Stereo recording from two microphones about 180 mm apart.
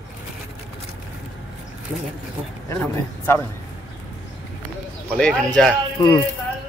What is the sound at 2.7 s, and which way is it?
Speech, 15° left (ahead or behind).